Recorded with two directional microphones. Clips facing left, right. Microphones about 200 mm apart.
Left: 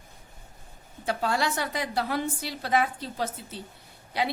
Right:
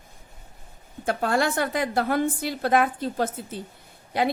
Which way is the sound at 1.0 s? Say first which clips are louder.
Right 4 dB; 50° right (ahead or behind).